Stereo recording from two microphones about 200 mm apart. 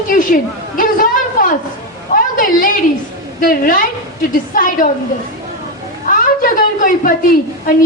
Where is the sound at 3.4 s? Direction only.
45° left (ahead or behind).